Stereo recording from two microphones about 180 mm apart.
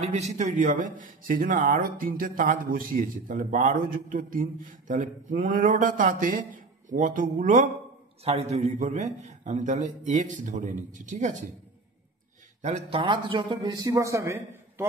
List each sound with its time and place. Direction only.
0.0 s a man's voice: 40° right (ahead or behind)
12.6 s a man's voice: 40° right (ahead or behind)
13.0 s a man's voice: 25° right (ahead or behind)